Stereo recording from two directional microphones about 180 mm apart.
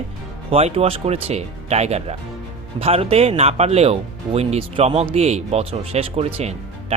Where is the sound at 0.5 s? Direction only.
35° right (ahead or behind).